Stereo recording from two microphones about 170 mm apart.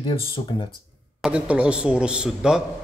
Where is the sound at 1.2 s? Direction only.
5° right (ahead or behind).